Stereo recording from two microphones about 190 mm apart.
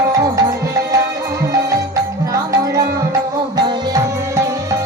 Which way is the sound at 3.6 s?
20° right (ahead or behind).